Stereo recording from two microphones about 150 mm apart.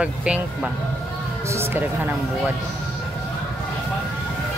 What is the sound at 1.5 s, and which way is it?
Speech, 15° right (ahead or behind).